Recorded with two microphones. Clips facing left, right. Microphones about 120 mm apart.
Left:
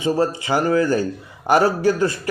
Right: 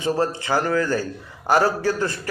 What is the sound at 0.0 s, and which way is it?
A man's voice, 15° left (ahead or behind).